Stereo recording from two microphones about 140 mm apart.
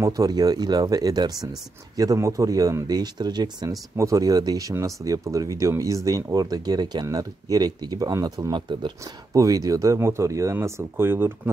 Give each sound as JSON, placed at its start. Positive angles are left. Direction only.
{"t": 0.0, "sound": "speech", "side_deg": -25}